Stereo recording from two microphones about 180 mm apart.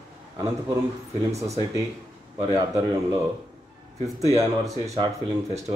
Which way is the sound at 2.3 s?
15° right (ahead or behind).